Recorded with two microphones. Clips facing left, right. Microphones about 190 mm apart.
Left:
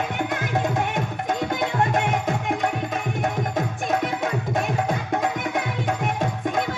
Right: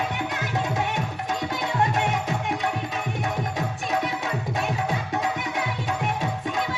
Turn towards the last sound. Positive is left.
turn(degrees=50)  # may be behind; listen again after turning